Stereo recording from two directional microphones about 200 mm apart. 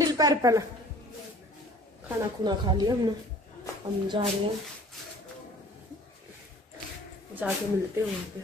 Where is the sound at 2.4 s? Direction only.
20° right (ahead or behind).